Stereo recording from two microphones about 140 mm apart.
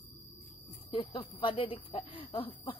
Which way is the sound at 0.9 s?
40° left (ahead or behind).